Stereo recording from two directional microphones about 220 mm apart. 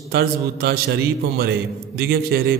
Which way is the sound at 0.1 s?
45° right (ahead or behind).